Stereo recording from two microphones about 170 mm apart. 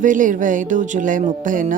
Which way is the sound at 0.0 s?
50° right (ahead or behind).